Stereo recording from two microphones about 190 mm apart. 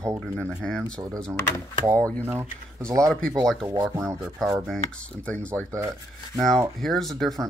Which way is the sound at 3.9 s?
15° right (ahead or behind).